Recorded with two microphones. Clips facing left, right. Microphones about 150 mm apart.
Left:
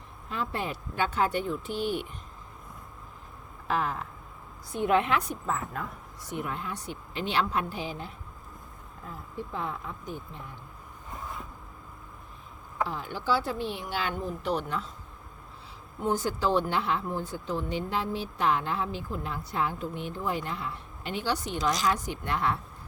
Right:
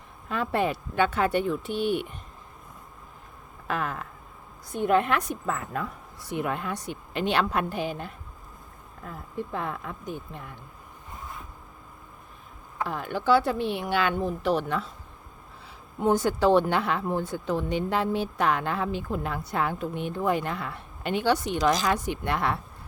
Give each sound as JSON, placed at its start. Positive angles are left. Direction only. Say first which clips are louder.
{"t": 0.3, "sound": "speech", "louder": "right 6 dB", "side_deg": -60}
{"t": 3.7, "sound": "a woman's voice", "louder": "left 1 dB", "side_deg": -55}
{"t": 5.2, "sound": "a woman's voice", "louder": "right 2 dB", "side_deg": -70}
{"t": 12.9, "sound": "speech", "louder": "right 8 dB", "side_deg": -60}
{"t": 16.0, "sound": "speech", "louder": "right 6 dB", "side_deg": -60}